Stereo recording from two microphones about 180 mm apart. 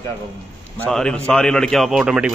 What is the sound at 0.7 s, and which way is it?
A man's voice, 5° left (ahead or behind).